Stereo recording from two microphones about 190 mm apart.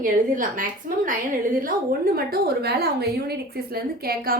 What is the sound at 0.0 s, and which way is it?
A woman's voice, 45° right (ahead or behind).